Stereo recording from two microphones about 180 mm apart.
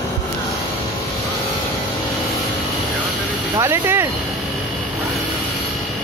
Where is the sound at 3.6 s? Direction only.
15° right (ahead or behind).